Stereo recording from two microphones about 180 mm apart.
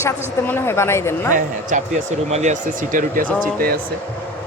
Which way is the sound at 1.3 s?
45° right (ahead or behind).